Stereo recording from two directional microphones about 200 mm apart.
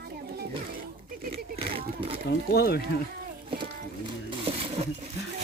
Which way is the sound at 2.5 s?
50° left (ahead or behind).